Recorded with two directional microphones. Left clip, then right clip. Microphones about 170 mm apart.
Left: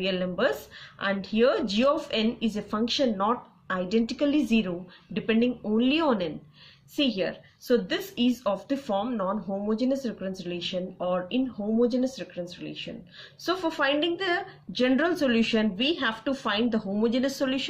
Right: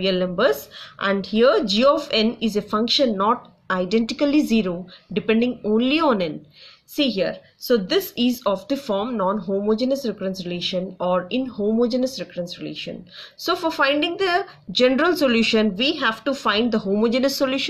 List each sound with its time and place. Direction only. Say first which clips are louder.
0.0 s speech: right 7 dB; 25° right (ahead or behind)